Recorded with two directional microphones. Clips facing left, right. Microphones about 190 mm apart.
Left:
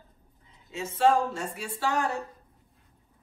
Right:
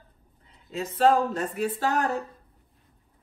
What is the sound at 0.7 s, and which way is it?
Speech, 35° right (ahead or behind).